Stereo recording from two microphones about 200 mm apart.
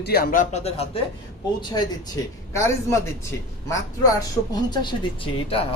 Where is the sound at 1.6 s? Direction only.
20° left (ahead or behind).